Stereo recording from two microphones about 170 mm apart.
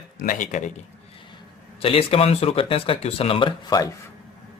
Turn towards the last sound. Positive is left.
turn(degrees=25)  # may be behind; listen again after turning